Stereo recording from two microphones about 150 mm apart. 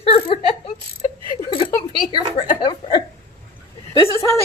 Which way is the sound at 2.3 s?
30° left (ahead or behind).